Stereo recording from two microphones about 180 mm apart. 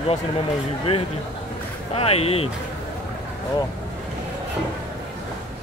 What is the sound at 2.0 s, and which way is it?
Speech, 35° left (ahead or behind).